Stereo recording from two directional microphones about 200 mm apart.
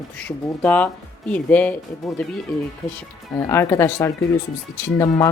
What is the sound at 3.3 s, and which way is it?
Speech, 15° left (ahead or behind).